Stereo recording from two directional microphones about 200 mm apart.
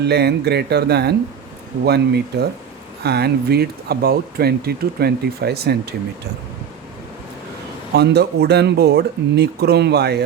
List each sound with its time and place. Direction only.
0.0 s speech: 55° right (ahead or behind)
7.9 s speech: 55° right (ahead or behind)